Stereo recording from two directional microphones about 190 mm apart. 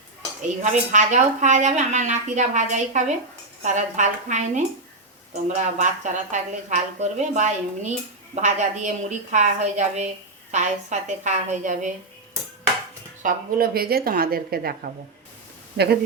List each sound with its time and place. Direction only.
0.6 s a woman's voice: 40° right (ahead or behind)
13.2 s a woman's voice: 50° right (ahead or behind)